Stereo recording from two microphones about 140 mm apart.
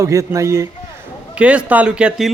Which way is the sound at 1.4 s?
10° right (ahead or behind).